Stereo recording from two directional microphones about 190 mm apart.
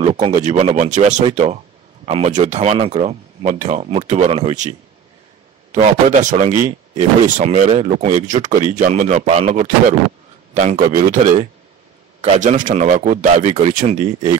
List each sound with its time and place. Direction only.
0.0 s speech: 30° right (ahead or behind)
5.8 s speech: 35° right (ahead or behind)
12.2 s speech: 40° right (ahead or behind)